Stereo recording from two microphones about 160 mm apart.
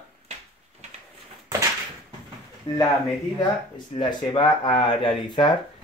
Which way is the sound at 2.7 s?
30° left (ahead or behind).